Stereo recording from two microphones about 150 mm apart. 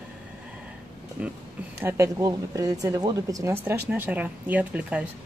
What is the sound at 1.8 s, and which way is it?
A woman's voice, 15° right (ahead or behind).